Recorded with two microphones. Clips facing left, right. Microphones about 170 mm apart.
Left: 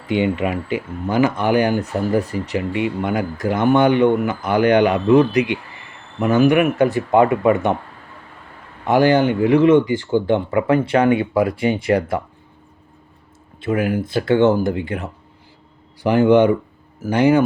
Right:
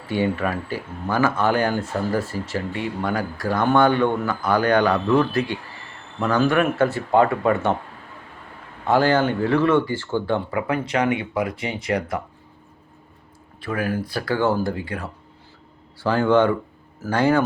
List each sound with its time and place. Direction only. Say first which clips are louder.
0.1 s speech: left 3 dB; 20° left (ahead or behind)
8.9 s speech: left 4 dB; 15° left (ahead or behind)
13.6 s speech: left 5 dB; 20° left (ahead or behind)